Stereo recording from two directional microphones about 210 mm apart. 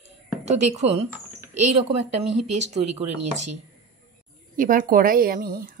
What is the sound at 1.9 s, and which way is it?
Speech, 30° right (ahead or behind).